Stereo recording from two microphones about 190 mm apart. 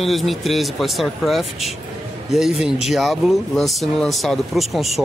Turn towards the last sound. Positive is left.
turn(degrees=0)  # may be behind; listen again after turning